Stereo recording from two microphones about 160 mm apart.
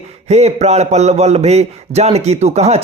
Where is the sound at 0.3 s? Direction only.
45° right (ahead or behind).